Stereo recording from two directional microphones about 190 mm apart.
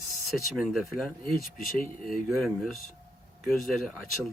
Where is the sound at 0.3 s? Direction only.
Centre (ahead or behind).